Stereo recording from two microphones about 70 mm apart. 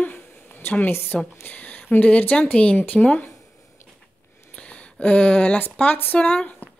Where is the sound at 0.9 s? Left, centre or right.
Left.